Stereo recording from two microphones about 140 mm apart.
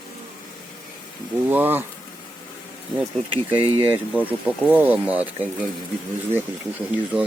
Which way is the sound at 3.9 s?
10° right (ahead or behind).